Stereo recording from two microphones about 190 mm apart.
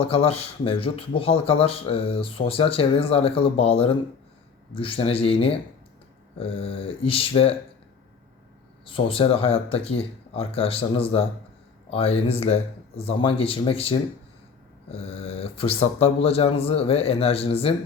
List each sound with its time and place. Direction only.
0.0 s speech: 30° left (ahead or behind)
8.9 s speech: 30° left (ahead or behind)